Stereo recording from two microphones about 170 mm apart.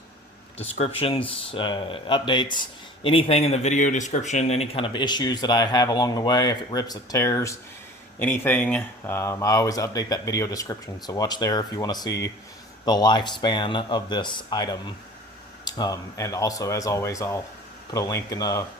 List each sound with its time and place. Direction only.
0.8 s speech: 35° left (ahead or behind)